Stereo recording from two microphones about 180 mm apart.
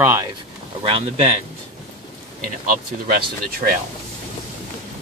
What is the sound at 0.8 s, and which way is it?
Speech, 35° right (ahead or behind).